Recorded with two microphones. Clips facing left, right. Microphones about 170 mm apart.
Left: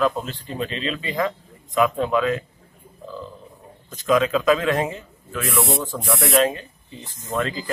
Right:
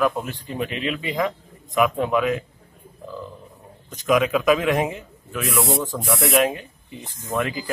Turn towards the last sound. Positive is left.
turn(degrees=-15)  # may be behind; listen again after turning